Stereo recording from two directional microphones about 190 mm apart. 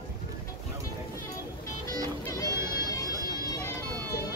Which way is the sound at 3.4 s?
20° left (ahead or behind).